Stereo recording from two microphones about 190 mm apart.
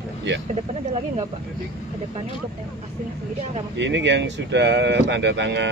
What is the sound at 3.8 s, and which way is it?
Speech, 70° right (ahead or behind).